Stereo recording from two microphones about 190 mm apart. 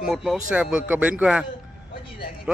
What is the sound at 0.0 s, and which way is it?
Speech, 5° right (ahead or behind).